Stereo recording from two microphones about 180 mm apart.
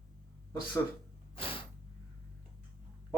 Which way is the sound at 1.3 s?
30° left (ahead or behind).